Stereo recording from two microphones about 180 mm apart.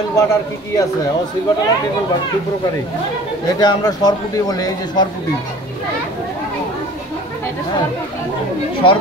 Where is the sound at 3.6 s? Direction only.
20° left (ahead or behind).